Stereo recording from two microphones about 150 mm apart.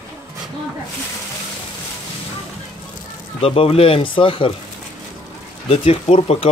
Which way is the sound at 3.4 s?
40° left (ahead or behind).